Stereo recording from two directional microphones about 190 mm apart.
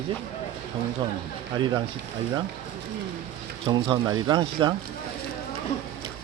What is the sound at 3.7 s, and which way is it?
Speech, 25° right (ahead or behind).